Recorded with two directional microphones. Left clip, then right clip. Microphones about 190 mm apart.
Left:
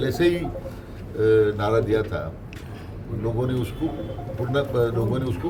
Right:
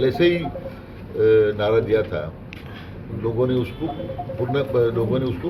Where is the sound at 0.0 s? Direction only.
20° left (ahead or behind).